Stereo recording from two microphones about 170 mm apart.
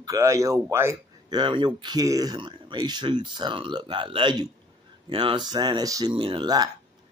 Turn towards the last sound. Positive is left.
turn(degrees=-25)  # may be behind; listen again after turning